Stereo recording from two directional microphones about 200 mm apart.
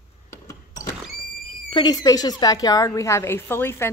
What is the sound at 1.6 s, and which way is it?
A woman's voice, 20° left (ahead or behind).